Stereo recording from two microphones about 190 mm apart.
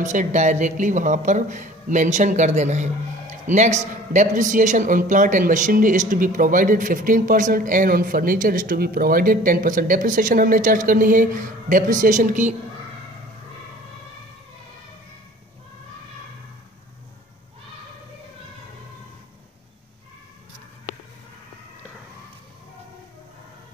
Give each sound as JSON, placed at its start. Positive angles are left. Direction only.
{"t": 0.0, "sound": "speech", "side_deg": -40}